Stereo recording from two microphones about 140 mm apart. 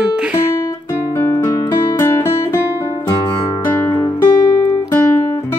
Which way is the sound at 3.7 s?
15° left (ahead or behind).